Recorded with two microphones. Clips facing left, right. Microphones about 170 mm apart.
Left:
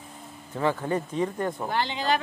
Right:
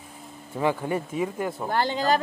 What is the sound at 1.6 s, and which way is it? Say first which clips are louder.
Speech: right 5 dB; 45° right (ahead or behind).